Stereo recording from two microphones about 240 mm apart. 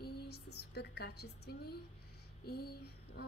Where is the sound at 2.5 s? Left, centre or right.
Left.